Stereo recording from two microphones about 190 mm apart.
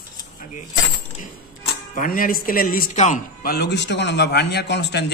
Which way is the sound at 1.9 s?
45° left (ahead or behind).